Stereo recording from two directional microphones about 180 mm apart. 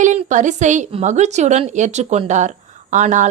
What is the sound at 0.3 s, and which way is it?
A woman's voice, 45° right (ahead or behind).